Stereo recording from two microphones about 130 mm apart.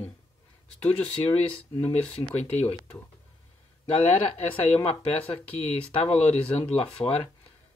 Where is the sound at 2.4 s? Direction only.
55° left (ahead or behind).